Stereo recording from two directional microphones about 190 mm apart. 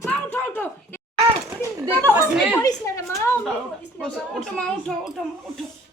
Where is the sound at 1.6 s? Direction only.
15° right (ahead or behind).